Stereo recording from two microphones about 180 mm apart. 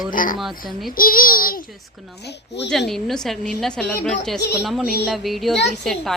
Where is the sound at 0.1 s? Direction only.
50° left (ahead or behind).